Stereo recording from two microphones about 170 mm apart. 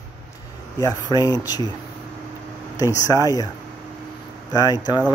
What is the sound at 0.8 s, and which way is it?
Speech, 20° left (ahead or behind).